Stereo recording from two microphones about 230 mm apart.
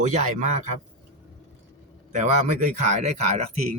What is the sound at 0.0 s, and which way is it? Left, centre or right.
Speech, right.